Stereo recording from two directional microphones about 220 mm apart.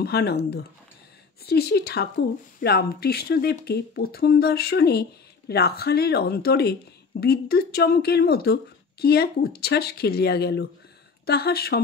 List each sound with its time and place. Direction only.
0.0 s speech: 45° left (ahead or behind)
1.4 s speech: 45° left (ahead or behind)